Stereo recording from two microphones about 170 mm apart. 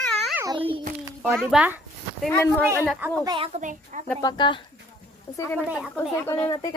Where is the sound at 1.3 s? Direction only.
5° right (ahead or behind).